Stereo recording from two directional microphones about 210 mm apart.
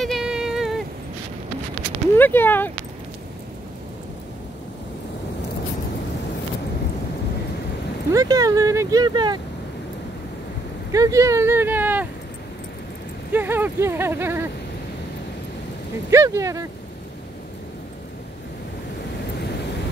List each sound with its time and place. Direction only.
0.0 s a sound: centre (ahead or behind)
2.1 s speech: 10° left (ahead or behind)
8.1 s speech: 15° right (ahead or behind)
10.9 s speech: 15° right (ahead or behind)
13.3 s speech: 10° right (ahead or behind)
16.1 s speech: 15° right (ahead or behind)